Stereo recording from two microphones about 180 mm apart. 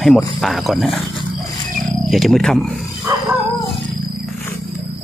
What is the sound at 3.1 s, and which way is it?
Dog, 15° right (ahead or behind).